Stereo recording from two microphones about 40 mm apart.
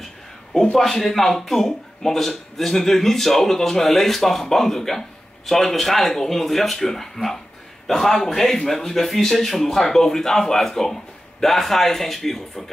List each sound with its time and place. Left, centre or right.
0.7 s speech: centre